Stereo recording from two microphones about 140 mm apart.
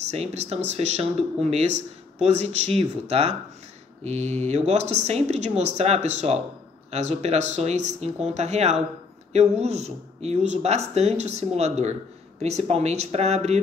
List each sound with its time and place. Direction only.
0.0 s speech: 50° right (ahead or behind)